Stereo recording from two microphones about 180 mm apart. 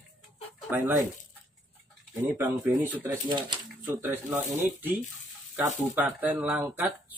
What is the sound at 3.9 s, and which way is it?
Speech, 15° right (ahead or behind).